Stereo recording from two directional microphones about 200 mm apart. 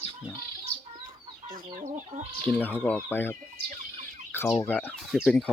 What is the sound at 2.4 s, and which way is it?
Speech, 10° left (ahead or behind).